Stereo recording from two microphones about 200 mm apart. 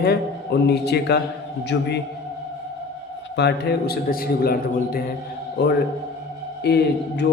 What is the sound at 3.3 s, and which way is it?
A man's voice, 55° left (ahead or behind).